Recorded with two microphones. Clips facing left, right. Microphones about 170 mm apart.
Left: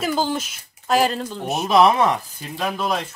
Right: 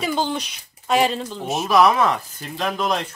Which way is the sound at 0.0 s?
Centre (ahead or behind).